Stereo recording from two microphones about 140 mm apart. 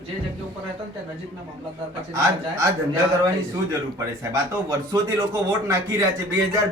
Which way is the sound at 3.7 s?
20° right (ahead or behind).